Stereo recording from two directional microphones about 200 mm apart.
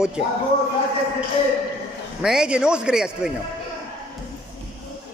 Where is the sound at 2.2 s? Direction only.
5° right (ahead or behind).